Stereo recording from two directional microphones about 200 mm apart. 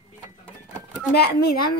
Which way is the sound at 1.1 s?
55° left (ahead or behind).